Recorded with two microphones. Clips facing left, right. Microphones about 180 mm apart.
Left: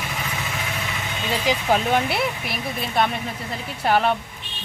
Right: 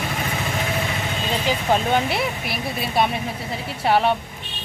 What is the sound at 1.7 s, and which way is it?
Speech, 5° left (ahead or behind).